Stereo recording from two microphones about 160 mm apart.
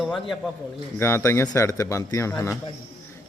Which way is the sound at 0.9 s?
15° left (ahead or behind).